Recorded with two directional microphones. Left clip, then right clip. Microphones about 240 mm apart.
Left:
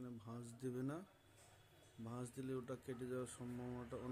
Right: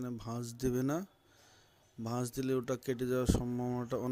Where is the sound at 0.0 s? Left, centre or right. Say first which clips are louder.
Right 13 dB; right.